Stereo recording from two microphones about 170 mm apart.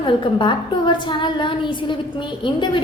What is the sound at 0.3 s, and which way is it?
A woman's voice, 25° left (ahead or behind).